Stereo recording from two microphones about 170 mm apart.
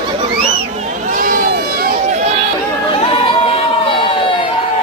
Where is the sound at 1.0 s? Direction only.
55° right (ahead or behind).